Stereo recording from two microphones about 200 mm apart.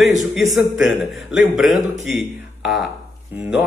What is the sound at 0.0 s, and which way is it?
A man's voice, centre (ahead or behind).